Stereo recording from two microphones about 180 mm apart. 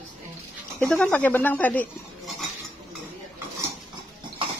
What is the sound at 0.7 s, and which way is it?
Speech, 5° left (ahead or behind).